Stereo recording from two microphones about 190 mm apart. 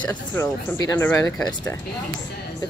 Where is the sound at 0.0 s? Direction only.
5° left (ahead or behind).